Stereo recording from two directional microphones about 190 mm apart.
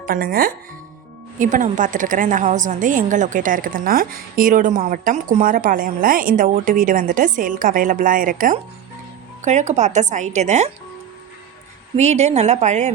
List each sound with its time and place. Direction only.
0.0 s a woman's voice: 50° right (ahead or behind)
11.9 s speech: 35° right (ahead or behind)